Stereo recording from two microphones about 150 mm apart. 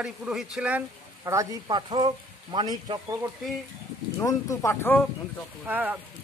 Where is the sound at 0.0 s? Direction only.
5° right (ahead or behind).